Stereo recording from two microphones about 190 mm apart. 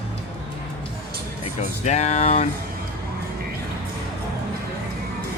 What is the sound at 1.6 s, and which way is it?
Speech, 35° left (ahead or behind).